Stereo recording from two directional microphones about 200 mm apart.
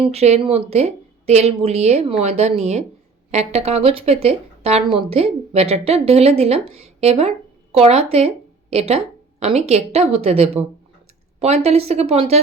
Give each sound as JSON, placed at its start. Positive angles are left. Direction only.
{"t": 0.0, "sound": "speech", "side_deg": -30}